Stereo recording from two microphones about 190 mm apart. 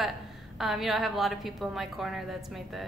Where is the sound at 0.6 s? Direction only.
Centre (ahead or behind).